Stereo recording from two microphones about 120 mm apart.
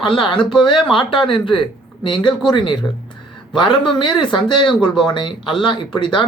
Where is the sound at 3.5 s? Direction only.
40° left (ahead or behind).